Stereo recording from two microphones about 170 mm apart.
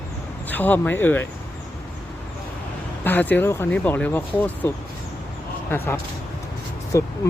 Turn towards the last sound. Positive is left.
turn(degrees=20)  # may be behind; listen again after turning